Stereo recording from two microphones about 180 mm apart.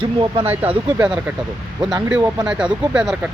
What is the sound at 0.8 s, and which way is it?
Speech, 20° right (ahead or behind).